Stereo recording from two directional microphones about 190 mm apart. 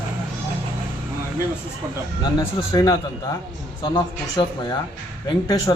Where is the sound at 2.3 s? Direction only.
20° left (ahead or behind).